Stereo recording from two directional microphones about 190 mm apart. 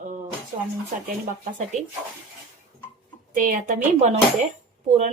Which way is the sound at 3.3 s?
45° right (ahead or behind).